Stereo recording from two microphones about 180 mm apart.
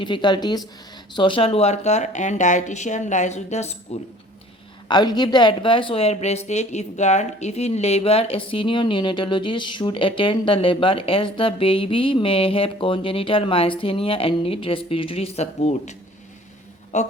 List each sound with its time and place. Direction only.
0.0 s speech: 25° left (ahead or behind)
4.9 s speech: 25° left (ahead or behind); by 17.1 s 40° left (ahead or behind)